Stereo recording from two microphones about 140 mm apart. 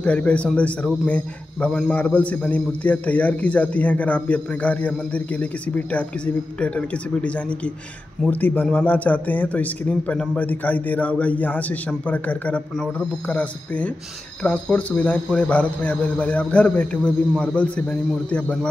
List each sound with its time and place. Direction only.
0.0 s a man's voice: 10° left (ahead or behind)